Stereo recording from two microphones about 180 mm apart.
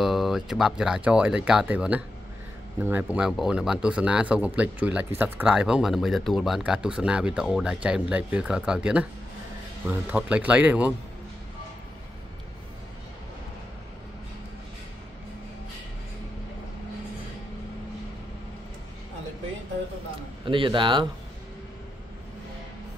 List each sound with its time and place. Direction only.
0.0 s speech: centre (ahead or behind)
20.4 s a man's voice: 30° right (ahead or behind)